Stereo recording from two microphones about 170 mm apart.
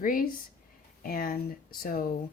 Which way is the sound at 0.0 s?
55° left (ahead or behind).